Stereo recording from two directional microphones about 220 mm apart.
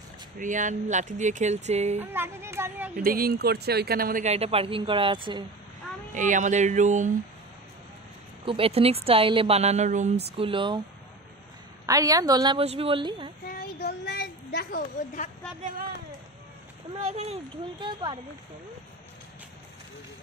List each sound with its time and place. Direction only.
0.4 s speech: 35° right (ahead or behind)
2.0 s speech: 10° right (ahead or behind)
3.0 s speech: 40° right (ahead or behind); by 5.4 s 20° right (ahead or behind)
6.1 s speech: 35° right (ahead or behind)
8.5 s a woman's voice: 25° right (ahead or behind)
11.8 s a woman's voice: 15° right (ahead or behind)
13.5 s a sound: 45° left (ahead or behind)
17.1 s a woman's voice: 30° right (ahead or behind)